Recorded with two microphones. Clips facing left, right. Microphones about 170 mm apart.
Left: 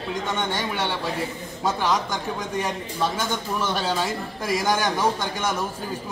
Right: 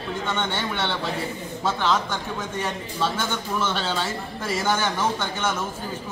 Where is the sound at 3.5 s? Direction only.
15° left (ahead or behind).